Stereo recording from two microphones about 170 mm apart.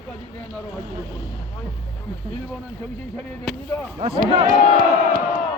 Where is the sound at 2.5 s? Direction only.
Centre (ahead or behind).